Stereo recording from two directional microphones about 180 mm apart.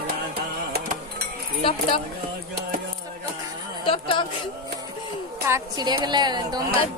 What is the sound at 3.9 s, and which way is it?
Speech, 25° left (ahead or behind).